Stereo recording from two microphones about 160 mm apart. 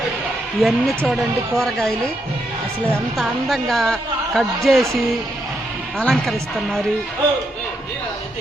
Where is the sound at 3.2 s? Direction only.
Centre (ahead or behind).